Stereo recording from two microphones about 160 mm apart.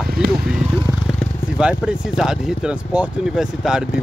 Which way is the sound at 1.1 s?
Centre (ahead or behind).